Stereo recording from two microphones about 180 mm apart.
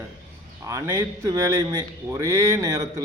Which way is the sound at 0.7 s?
15° right (ahead or behind).